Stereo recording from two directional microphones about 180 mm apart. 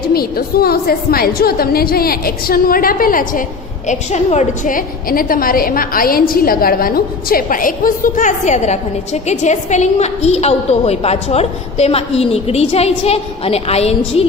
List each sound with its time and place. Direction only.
0.1 s a woman's voice: 55° left (ahead or behind); by 14.2 s 35° left (ahead or behind)